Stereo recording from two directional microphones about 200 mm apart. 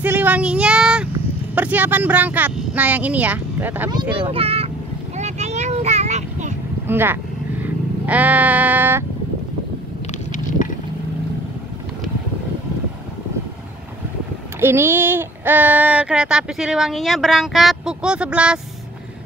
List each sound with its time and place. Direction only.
0.0 s child singing: 10° right (ahead or behind)
1.5 s speech: 10° right (ahead or behind)
4.3 s a child's voice: 30° right (ahead or behind)
5.1 s a sound: 35° right (ahead or behind)
6.9 s speech: 10° right (ahead or behind)
7.6 s sheep: 10° right (ahead or behind)
14.6 s speech: 10° right (ahead or behind)